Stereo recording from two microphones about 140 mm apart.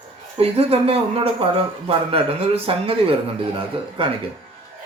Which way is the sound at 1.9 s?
40° right (ahead or behind).